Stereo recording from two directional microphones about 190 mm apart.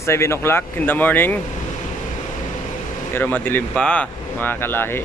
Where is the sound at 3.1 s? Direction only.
10° left (ahead or behind).